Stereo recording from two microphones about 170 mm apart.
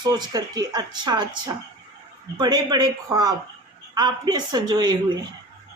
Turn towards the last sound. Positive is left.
turn(degrees=-25)  # may be behind; listen again after turning